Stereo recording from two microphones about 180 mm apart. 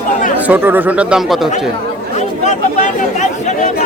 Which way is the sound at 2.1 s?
40° left (ahead or behind).